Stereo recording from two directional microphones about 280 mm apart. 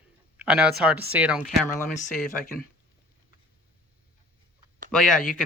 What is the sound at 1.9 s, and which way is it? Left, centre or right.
Speech, left.